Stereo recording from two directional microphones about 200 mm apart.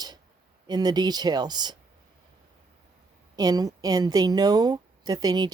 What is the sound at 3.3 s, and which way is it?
A woman's voice, 20° right (ahead or behind).